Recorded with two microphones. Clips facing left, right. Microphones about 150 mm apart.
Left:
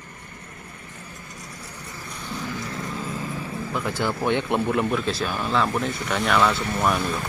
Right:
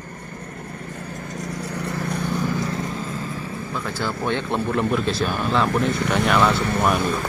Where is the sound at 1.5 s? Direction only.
70° right (ahead or behind).